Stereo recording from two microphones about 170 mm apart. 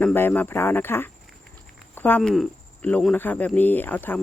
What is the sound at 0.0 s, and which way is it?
Speech, 10° left (ahead or behind).